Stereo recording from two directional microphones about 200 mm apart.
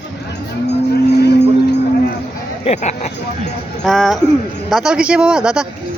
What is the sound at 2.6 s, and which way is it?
Speech, 35° left (ahead or behind).